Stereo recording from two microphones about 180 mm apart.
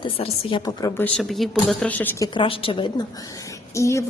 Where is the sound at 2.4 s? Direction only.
30° left (ahead or behind).